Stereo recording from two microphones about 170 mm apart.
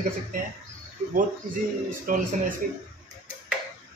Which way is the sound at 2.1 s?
55° right (ahead or behind).